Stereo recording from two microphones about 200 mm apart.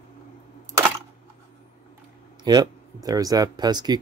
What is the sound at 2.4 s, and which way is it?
Speech, 20° right (ahead or behind).